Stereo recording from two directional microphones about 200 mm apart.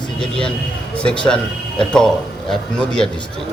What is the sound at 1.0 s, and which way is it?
Speech, 5° left (ahead or behind).